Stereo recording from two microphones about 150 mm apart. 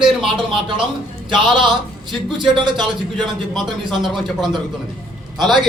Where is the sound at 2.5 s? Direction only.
30° right (ahead or behind).